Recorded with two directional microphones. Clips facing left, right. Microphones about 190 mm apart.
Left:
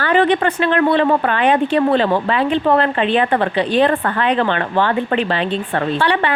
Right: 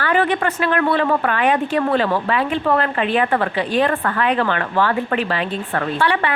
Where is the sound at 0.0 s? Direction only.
30° left (ahead or behind).